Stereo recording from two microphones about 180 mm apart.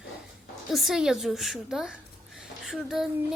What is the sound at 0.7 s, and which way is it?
A child's voice, centre (ahead or behind).